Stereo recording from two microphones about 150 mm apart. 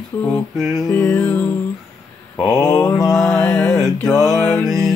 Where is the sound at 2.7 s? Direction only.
20° left (ahead or behind).